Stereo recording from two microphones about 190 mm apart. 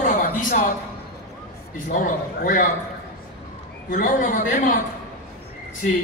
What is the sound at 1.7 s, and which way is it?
Speech, 45° left (ahead or behind).